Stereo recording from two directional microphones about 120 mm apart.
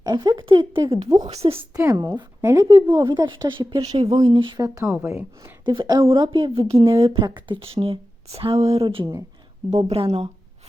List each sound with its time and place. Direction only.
0.0 s speech: 35° right (ahead or behind)
1.3 s speech: 55° right (ahead or behind)
1.7 s a woman's voice: 30° right (ahead or behind)
4.2 s speech: 45° right (ahead or behind)
4.5 s speech: 30° right (ahead or behind)
4.8 s a woman's voice: 20° right (ahead or behind)
5.4 s a woman's voice: 40° right (ahead or behind); by 10.2 s 60° right (ahead or behind)